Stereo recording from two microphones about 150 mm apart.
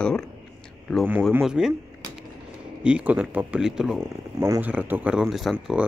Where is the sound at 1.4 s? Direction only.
5° right (ahead or behind).